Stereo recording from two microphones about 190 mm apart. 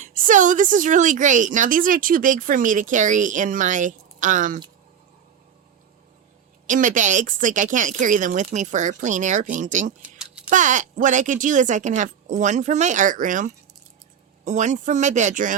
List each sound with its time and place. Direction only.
0.0 s speech: 40° right (ahead or behind)
6.7 s a woman's voice: 40° right (ahead or behind)
10.0 s a sound: 5° right (ahead or behind)
10.5 s a woman's voice: 40° right (ahead or behind)